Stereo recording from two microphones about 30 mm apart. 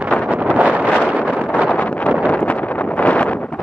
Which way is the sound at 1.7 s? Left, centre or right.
Left.